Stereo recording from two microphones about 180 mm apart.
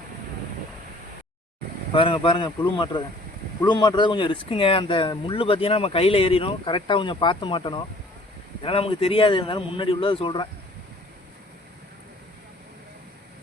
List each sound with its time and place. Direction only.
1.9 s speech: 30° left (ahead or behind)